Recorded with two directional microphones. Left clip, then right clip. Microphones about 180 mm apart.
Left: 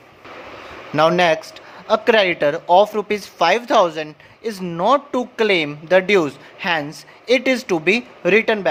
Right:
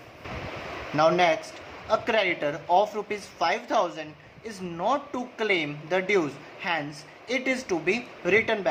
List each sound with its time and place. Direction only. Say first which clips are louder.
0.9 s speech: left 6 dB; 50° left (ahead or behind)